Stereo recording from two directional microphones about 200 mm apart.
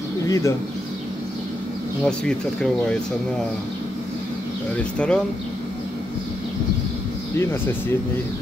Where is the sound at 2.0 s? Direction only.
5° left (ahead or behind).